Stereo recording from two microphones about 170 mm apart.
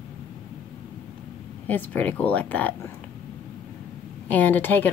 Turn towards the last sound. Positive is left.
turn(degrees=10)  # may be behind; listen again after turning